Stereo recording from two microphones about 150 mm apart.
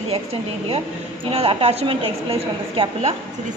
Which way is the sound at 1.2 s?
40° right (ahead or behind).